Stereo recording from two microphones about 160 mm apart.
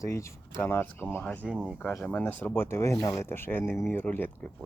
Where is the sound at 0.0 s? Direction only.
20° left (ahead or behind).